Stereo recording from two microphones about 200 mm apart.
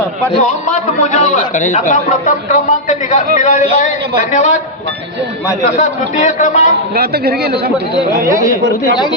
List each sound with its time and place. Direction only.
0.4 s a man's voice: 40° left (ahead or behind)
6.1 s a man's voice: 40° left (ahead or behind)
6.9 s speech: 50° right (ahead or behind)
8.3 s speech: 15° right (ahead or behind)